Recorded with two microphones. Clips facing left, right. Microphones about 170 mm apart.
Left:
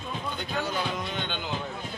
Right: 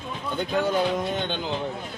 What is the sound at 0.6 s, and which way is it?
Speech, 45° right (ahead or behind).